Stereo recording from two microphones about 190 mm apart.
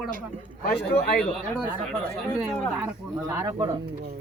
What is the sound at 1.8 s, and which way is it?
Speech, 5° left (ahead or behind).